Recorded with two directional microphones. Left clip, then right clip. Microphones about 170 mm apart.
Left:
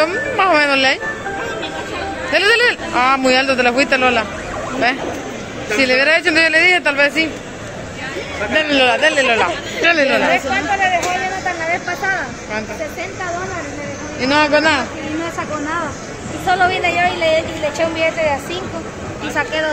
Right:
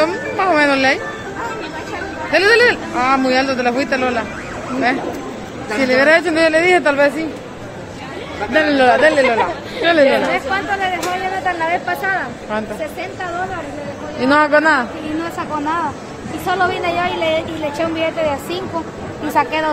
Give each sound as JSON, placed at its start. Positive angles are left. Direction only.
{"t": 0.0, "sound": "speech", "side_deg": 0}
{"t": 2.3, "sound": "a man's voice", "side_deg": 0}
{"t": 5.8, "sound": "speech", "side_deg": -15}
{"t": 8.5, "sound": "speech", "side_deg": -15}
{"t": 10.3, "sound": "speech", "side_deg": -75}
{"t": 11.7, "sound": "vehicle", "side_deg": -40}
{"t": 14.2, "sound": "a man's voice", "side_deg": -40}
{"t": 16.4, "sound": "a woman's voice", "side_deg": -80}